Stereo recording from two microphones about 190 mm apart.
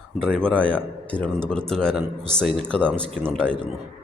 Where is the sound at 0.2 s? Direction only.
5° left (ahead or behind).